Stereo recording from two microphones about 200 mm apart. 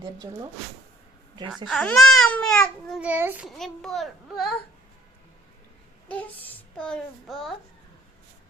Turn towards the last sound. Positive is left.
turn(degrees=0)  # may be behind; listen again after turning